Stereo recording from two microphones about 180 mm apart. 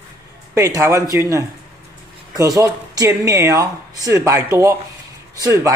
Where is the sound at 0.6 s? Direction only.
15° right (ahead or behind).